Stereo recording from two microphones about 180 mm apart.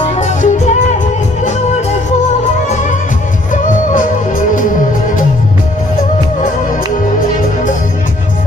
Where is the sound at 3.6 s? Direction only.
50° left (ahead or behind).